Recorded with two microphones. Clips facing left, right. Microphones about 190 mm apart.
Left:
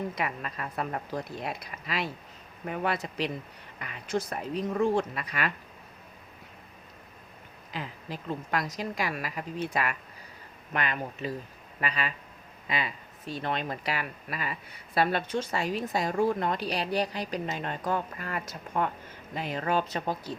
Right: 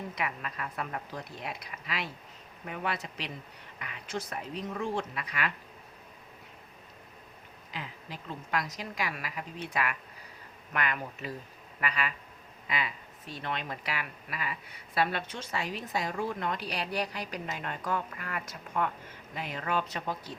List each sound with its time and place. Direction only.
0.2 s a woman's voice: 35° left (ahead or behind)
7.7 s a woman's voice: 40° left (ahead or behind)